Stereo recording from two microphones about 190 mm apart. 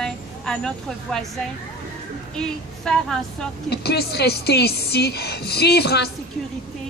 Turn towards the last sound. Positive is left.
turn(degrees=60)  # may be behind; listen again after turning